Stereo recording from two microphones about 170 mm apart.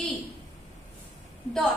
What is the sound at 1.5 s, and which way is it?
Speech, 5° left (ahead or behind).